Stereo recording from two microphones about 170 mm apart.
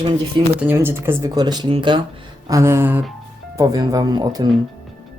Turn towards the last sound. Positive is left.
turn(degrees=-25)  # may be behind; listen again after turning